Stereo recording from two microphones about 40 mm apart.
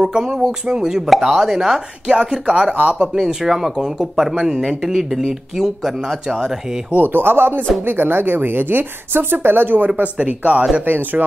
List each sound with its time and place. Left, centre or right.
0.0 s speech: centre
1.0 s speech: centre
2.0 s speech: centre
3.2 s speech: centre
7.0 s speech: right
10.1 s speech: right
10.9 s speech: right